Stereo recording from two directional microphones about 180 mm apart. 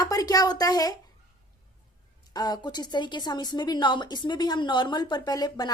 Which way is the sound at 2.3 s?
20° left (ahead or behind).